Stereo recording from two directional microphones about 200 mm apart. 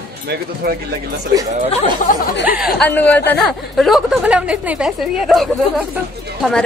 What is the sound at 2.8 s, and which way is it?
Speech, 10° left (ahead or behind).